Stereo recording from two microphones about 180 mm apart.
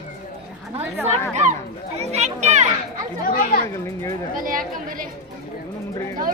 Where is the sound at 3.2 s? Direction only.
50° left (ahead or behind).